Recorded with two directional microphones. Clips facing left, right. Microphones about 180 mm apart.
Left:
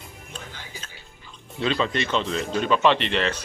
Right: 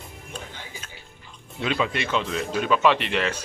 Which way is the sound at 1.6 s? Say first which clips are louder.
Left 1 dB; 10° right (ahead or behind).